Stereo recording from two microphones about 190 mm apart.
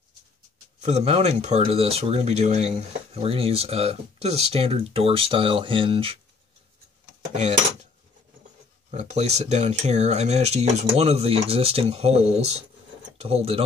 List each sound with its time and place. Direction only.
0.7 s speech: 35° right (ahead or behind)
8.9 s speech: 35° right (ahead or behind)